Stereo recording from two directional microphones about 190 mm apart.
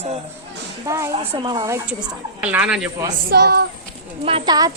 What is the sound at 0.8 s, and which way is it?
Speech, 15° right (ahead or behind).